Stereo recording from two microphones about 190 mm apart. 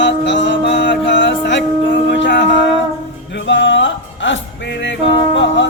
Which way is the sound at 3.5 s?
70° left (ahead or behind).